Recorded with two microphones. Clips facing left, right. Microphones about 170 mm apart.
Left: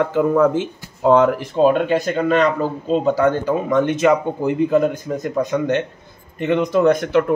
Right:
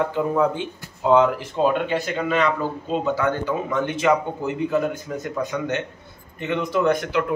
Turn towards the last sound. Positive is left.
turn(degrees=40)  # may be behind; listen again after turning